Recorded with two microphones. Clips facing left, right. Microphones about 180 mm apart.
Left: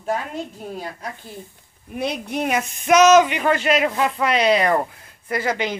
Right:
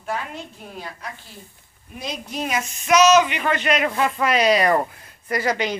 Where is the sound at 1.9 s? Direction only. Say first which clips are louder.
Left 6 dB; 60° left (ahead or behind); by 3.6 s 40° left (ahead or behind).